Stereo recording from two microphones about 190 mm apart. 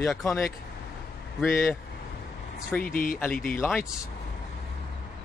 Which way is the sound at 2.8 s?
50° left (ahead or behind).